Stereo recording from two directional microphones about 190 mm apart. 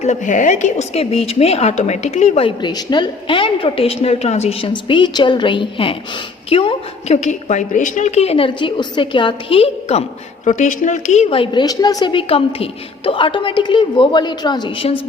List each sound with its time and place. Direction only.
0.0 s a woman's voice: 40° left (ahead or behind)